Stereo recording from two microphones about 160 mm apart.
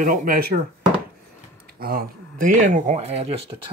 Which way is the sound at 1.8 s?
65° right (ahead or behind).